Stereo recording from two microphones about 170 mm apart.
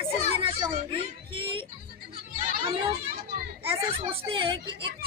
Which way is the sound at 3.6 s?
35° right (ahead or behind).